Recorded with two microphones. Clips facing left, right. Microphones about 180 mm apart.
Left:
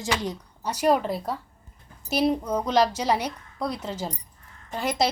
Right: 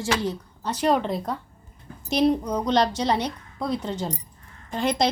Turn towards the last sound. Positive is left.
turn(degrees=5)  # may be behind; listen again after turning